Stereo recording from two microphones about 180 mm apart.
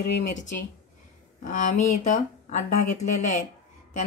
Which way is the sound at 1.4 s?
45° left (ahead or behind).